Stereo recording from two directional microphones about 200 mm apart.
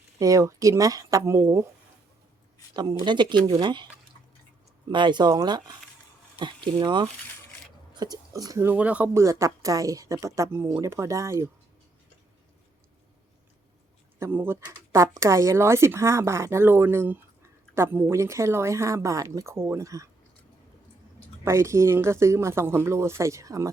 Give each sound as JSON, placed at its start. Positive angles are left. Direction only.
{"t": 0.2, "sound": "speech", "side_deg": -15}
{"t": 3.0, "sound": "speech", "side_deg": -20}
{"t": 4.9, "sound": "speech", "side_deg": -25}
{"t": 14.2, "sound": "speech", "side_deg": -10}
{"t": 21.4, "sound": "speech", "side_deg": -15}